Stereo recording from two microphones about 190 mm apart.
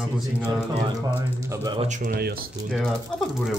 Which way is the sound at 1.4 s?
20° right (ahead or behind).